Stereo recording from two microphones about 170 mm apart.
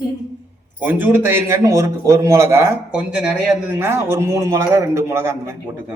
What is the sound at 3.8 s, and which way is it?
A man's voice, 15° right (ahead or behind).